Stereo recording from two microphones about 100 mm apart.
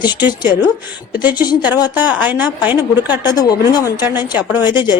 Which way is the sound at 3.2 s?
40° left (ahead or behind).